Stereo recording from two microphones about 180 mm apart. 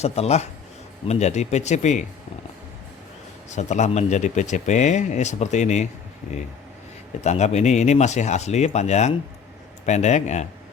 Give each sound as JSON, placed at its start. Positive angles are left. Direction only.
{"t": 0.0, "sound": "speech", "side_deg": 35}
{"t": 3.5, "sound": "speech", "side_deg": 40}
{"t": 7.3, "sound": "speech", "side_deg": 40}